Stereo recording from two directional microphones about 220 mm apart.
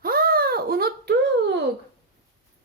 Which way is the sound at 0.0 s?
45° right (ahead or behind).